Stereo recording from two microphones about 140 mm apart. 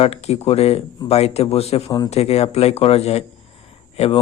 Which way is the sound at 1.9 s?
30° left (ahead or behind).